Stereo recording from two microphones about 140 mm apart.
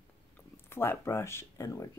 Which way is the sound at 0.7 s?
15° left (ahead or behind).